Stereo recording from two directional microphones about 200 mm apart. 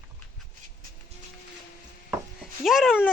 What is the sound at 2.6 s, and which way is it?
Speech, centre (ahead or behind).